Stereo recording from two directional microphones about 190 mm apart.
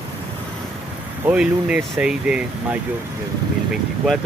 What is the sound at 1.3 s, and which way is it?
Speech, 5° right (ahead or behind).